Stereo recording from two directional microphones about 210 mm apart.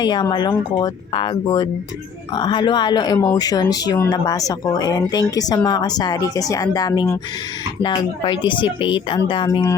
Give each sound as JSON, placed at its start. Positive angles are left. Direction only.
{"t": 0.0, "sound": "speech", "side_deg": 20}